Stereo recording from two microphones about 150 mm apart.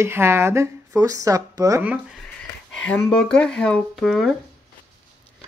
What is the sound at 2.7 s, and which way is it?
Speech, 5° left (ahead or behind).